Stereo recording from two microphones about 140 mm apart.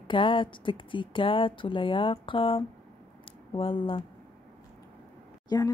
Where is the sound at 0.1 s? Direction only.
35° left (ahead or behind).